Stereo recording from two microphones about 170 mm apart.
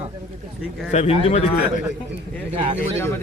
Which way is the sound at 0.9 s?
40° left (ahead or behind).